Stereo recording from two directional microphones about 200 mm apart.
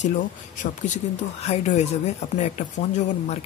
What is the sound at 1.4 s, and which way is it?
Speech, 35° left (ahead or behind).